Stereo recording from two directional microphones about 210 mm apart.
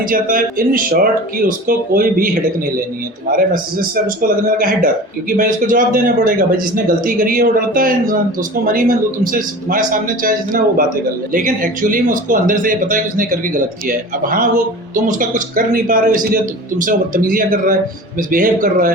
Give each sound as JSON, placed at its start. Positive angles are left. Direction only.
{"t": 0.1, "sound": "speech", "side_deg": -40}
{"t": 3.9, "sound": "speech", "side_deg": -40}